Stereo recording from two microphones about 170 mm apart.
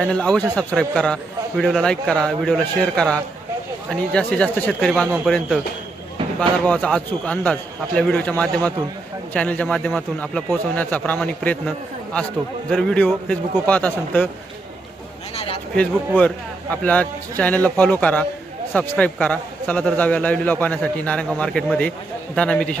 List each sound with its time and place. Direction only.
0.0 s a man's voice: 5° left (ahead or behind)
6.7 s a man's voice: 5° left (ahead or behind)
12.7 s a man's voice: 5° left (ahead or behind)
15.4 s a sound: 35° left (ahead or behind)
15.7 s a man's voice: 10° left (ahead or behind)